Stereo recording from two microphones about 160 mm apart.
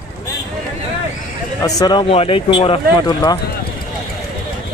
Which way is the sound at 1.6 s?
20° left (ahead or behind).